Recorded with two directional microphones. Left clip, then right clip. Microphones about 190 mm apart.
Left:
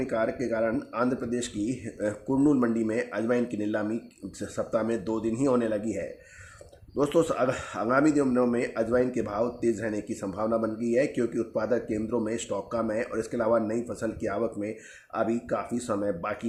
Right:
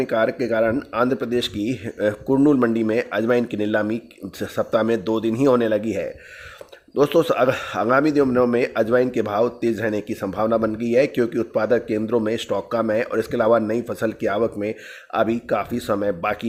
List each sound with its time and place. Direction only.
0.0 s speech: 35° right (ahead or behind)